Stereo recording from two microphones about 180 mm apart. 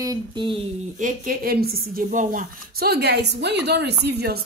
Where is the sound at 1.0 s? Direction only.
50° right (ahead or behind).